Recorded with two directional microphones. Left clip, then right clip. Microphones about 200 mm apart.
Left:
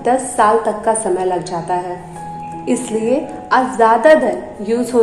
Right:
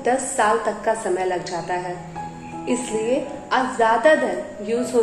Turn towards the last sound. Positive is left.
turn(degrees=20)  # may be behind; listen again after turning